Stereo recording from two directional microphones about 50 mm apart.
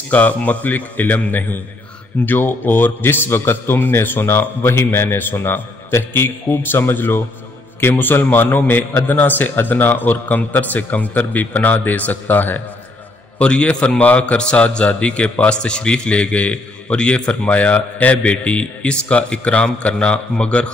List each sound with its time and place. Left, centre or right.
0.1 s a man's voice: left
13.4 s a man's voice: left